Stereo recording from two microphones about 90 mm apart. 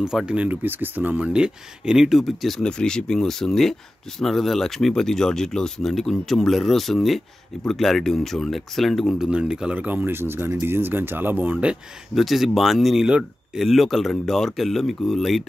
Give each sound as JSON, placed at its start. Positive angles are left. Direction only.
{"t": 0.0, "sound": "speech", "side_deg": -10}
{"t": 9.3, "sound": "speech", "side_deg": -10}
{"t": 12.2, "sound": "speech", "side_deg": 0}